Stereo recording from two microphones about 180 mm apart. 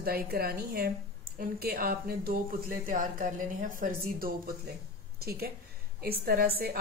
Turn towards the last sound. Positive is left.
turn(degrees=-55)  # may be behind; listen again after turning